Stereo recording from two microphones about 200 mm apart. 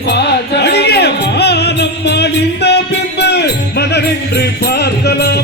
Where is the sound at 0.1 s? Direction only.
55° left (ahead or behind).